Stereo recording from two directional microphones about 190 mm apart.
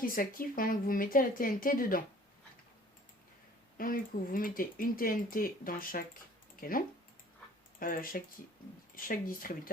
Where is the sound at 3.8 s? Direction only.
45° left (ahead or behind).